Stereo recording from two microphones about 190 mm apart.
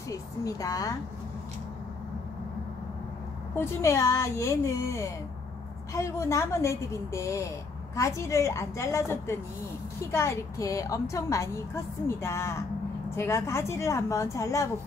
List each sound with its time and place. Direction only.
0.1 s a woman's voice: 15° left (ahead or behind)
3.5 s a woman's voice: 15° left (ahead or behind)